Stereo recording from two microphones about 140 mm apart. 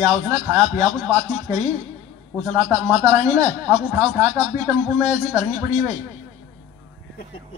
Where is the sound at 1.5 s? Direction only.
25° right (ahead or behind).